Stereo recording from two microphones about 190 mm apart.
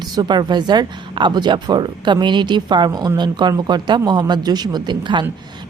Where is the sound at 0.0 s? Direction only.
20° right (ahead or behind).